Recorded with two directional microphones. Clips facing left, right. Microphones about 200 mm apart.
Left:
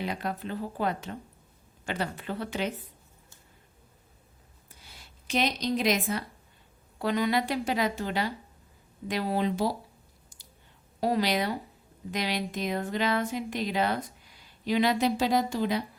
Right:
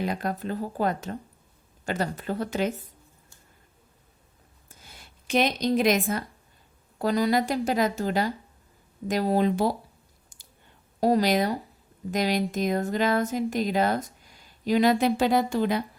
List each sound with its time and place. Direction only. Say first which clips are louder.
0.0 s speech: right 4 dB; 45° right (ahead or behind)
4.7 s speech: right 3 dB; 50° right (ahead or behind)
11.0 s speech: right 5 dB; 45° right (ahead or behind)